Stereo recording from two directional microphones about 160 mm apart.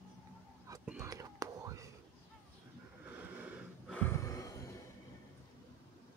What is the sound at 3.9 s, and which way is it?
Gasp, 15° left (ahead or behind).